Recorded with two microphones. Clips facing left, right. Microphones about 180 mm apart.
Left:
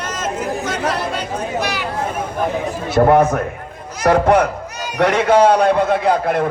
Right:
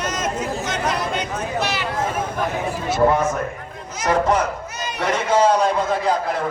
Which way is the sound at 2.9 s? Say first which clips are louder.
Left 6 dB; 60° left (ahead or behind).